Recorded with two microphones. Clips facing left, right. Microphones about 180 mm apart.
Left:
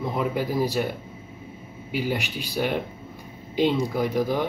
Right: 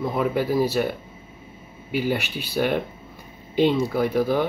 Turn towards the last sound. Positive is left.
turn(degrees=15)  # may be behind; listen again after turning